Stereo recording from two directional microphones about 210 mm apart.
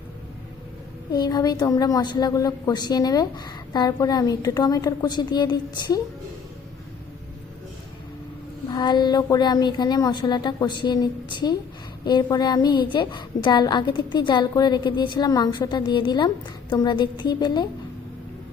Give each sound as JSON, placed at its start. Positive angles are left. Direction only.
{"t": 1.1, "sound": "a woman's voice", "side_deg": 20}
{"t": 8.7, "sound": "a woman's voice", "side_deg": 20}